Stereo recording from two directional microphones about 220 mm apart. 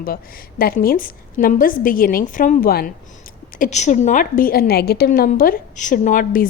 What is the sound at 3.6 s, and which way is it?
A woman's voice, 30° left (ahead or behind).